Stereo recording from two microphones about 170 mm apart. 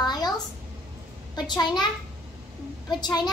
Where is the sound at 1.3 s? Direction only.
25° left (ahead or behind).